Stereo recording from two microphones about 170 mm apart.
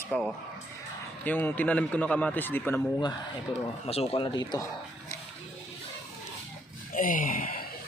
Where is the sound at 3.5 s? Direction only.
30° left (ahead or behind).